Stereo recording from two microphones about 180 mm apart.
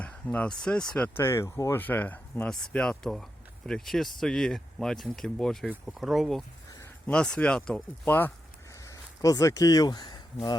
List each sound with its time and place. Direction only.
0.0 s speech: 5° left (ahead or behind); by 10.2 s 25° left (ahead or behind)